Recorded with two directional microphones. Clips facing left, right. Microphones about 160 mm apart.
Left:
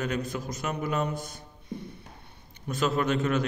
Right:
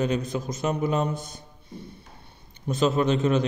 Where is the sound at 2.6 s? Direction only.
20° right (ahead or behind).